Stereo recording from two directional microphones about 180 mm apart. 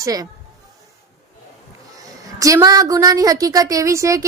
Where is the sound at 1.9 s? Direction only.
20° right (ahead or behind).